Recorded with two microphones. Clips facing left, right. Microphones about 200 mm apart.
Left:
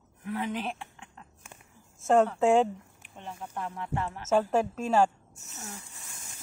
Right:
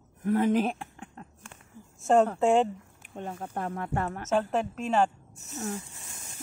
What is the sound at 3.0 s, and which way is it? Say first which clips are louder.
Speech: right 6 dB; 45° right (ahead or behind).